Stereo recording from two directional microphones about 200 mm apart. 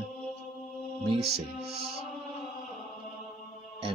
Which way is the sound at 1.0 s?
30° right (ahead or behind).